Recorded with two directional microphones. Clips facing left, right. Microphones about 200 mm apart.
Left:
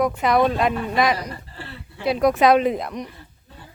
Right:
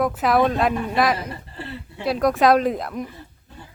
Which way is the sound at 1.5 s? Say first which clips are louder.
Right 4 dB; 25° right (ahead or behind).